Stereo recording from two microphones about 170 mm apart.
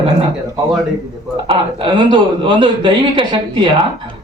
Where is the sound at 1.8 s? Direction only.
30° right (ahead or behind).